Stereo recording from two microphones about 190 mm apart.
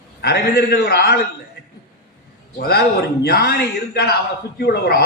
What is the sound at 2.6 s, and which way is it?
A man's voice, 55° left (ahead or behind).